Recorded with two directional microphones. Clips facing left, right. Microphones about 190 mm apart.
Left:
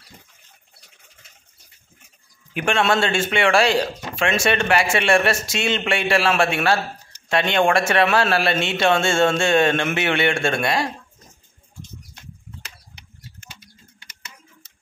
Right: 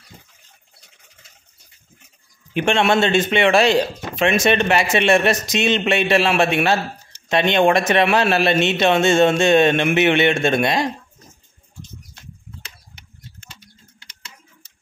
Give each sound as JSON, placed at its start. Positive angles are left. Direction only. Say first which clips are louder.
{"t": 2.5, "sound": "speech", "louder": "right 3 dB", "side_deg": -25}